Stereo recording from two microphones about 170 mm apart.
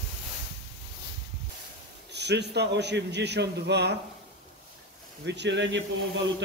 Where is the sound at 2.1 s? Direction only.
80° right.